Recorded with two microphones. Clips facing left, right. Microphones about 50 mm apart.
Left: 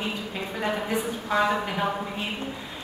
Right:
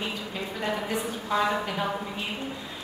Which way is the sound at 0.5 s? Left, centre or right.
Left.